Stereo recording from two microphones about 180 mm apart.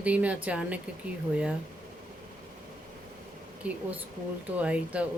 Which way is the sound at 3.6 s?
5° right (ahead or behind).